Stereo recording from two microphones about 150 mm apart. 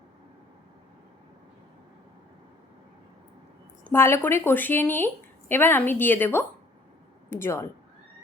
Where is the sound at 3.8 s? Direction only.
15° left (ahead or behind).